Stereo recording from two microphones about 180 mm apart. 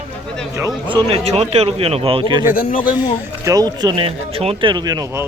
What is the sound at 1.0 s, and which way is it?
Speech, 35° right (ahead or behind).